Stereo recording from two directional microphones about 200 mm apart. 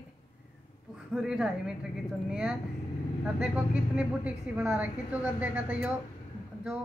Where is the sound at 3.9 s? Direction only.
5° right (ahead or behind).